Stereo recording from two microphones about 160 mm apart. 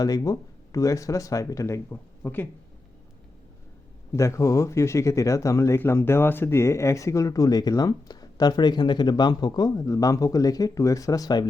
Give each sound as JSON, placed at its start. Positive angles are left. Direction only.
{"t": 0.0, "sound": "speech", "side_deg": 20}
{"t": 4.1, "sound": "speech", "side_deg": 20}